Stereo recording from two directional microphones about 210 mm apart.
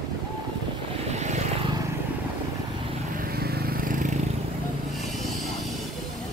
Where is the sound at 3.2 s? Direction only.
45° right (ahead or behind).